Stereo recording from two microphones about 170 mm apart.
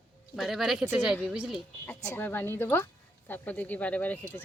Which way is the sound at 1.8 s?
10° left (ahead or behind).